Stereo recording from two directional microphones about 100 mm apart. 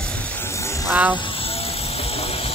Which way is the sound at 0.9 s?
15° right (ahead or behind).